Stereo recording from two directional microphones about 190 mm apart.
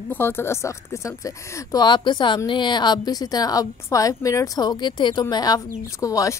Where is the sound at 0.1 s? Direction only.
10° left (ahead or behind).